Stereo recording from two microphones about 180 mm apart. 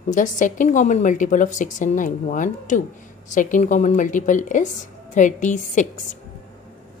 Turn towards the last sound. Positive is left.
turn(degrees=45)  # may be behind; listen again after turning